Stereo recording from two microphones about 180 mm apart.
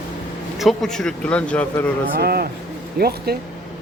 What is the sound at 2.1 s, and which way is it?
Speech, 60° right (ahead or behind).